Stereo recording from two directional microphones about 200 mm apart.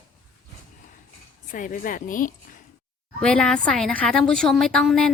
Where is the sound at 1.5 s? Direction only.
40° left (ahead or behind).